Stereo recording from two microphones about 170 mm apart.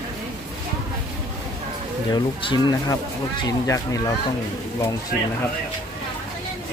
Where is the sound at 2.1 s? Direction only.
25° left (ahead or behind).